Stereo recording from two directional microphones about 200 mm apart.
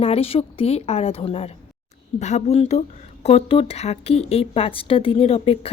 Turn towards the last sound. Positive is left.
turn(degrees=30)  # may be behind; listen again after turning